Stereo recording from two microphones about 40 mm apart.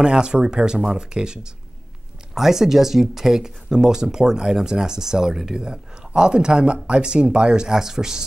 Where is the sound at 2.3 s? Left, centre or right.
Centre.